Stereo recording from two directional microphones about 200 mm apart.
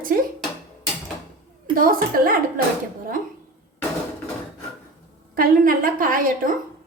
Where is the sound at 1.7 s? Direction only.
45° right (ahead or behind).